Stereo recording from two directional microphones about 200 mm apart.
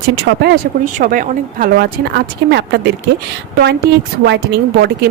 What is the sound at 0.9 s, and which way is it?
Speech, 40° right (ahead or behind).